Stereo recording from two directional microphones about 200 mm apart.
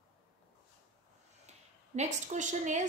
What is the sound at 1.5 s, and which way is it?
Speech, 35° right (ahead or behind).